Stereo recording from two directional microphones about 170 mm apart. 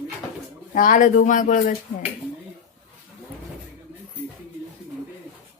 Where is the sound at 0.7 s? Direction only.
50° left (ahead or behind).